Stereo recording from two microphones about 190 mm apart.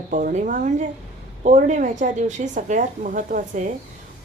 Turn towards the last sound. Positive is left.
turn(degrees=-40)  # may be behind; listen again after turning